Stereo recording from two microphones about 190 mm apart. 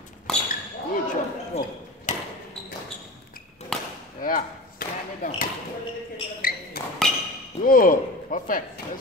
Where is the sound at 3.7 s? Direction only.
5° left (ahead or behind).